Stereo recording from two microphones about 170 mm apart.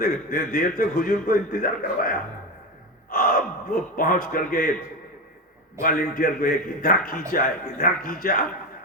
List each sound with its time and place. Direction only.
0.0 s a man's voice: 60° left (ahead or behind)
5.8 s a man's voice: 60° left (ahead or behind)